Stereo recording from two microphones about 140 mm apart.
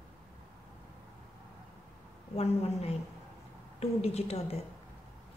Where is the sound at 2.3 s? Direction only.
50° left (ahead or behind).